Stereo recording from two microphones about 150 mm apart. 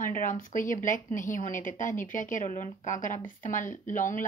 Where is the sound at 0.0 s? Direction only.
65° left (ahead or behind).